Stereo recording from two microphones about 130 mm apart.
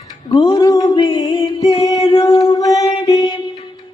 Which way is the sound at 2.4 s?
25° left (ahead or behind).